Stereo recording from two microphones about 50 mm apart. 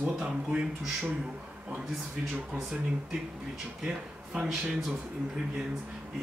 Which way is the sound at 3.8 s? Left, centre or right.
Centre.